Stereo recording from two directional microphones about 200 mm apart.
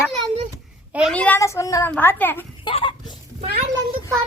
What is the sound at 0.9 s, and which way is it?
Speech, 5° right (ahead or behind).